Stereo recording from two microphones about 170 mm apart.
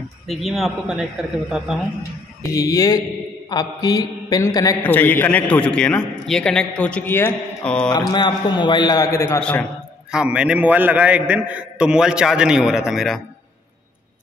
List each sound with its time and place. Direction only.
0.3 s a man's voice: centre (ahead or behind)
2.5 s a man's voice: 20° left (ahead or behind)
8.1 s a man's voice: 25° left (ahead or behind)
9.4 s a man's voice: 10° left (ahead or behind)
10.1 s a man's voice: 5° right (ahead or behind)